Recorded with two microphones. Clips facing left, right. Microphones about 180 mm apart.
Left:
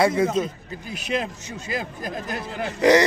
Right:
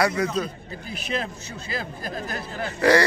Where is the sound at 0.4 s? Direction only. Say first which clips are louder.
Left 3 dB; 15° left (ahead or behind).